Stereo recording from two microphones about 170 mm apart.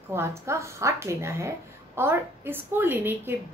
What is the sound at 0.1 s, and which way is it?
A woman's voice, 15° right (ahead or behind).